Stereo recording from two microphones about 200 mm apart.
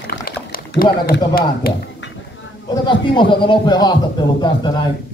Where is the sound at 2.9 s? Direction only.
25° left (ahead or behind).